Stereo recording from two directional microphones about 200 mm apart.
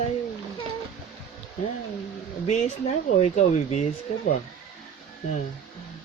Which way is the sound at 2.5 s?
35° left (ahead or behind).